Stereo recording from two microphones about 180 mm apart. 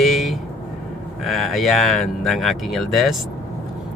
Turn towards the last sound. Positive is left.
turn(degrees=0)  # may be behind; listen again after turning